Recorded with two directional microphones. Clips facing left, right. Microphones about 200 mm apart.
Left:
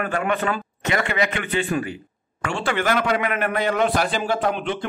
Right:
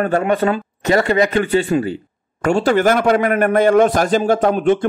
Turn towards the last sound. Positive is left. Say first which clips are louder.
# right 9 dB
turn(degrees=-45)  # may be behind; listen again after turning